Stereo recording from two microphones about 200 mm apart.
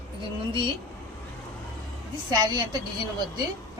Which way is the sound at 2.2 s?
20° right (ahead or behind).